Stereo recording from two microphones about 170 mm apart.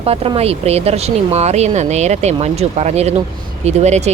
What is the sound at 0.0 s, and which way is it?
Speech, 35° right (ahead or behind).